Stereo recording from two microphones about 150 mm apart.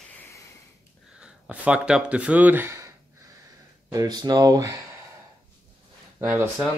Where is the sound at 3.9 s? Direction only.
25° right (ahead or behind).